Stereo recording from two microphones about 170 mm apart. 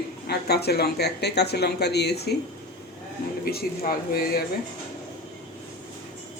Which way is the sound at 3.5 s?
60° left (ahead or behind).